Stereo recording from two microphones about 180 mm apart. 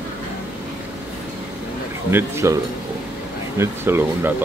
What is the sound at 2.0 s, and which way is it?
Speech, 15° right (ahead or behind).